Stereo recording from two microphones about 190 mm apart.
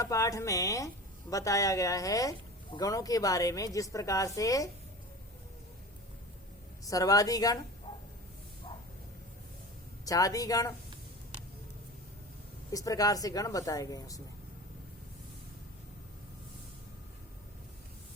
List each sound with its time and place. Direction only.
0.0 s speech: 15° left (ahead or behind)
6.8 s a woman's voice: 20° left (ahead or behind)
10.1 s a woman's voice: 20° left (ahead or behind)
12.7 s speech: 20° left (ahead or behind)